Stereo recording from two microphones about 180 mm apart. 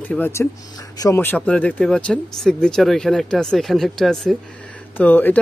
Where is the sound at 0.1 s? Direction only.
15° left (ahead or behind).